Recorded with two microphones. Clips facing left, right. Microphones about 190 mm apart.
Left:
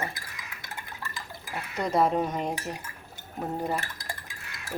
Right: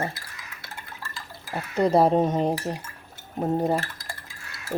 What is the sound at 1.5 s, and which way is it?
Speech, 30° right (ahead or behind).